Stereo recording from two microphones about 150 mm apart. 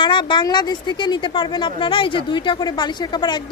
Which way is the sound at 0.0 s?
30° left (ahead or behind).